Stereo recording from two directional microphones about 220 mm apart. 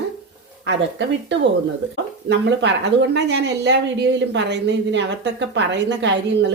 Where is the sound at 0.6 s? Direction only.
55° right (ahead or behind).